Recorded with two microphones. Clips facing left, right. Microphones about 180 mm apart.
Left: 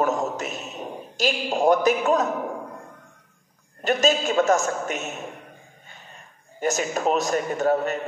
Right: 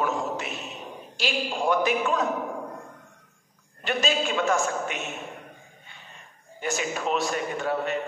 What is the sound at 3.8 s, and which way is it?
A man's voice, 45° left (ahead or behind).